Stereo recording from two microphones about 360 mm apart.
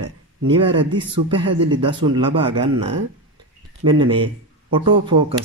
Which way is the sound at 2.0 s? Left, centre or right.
Centre.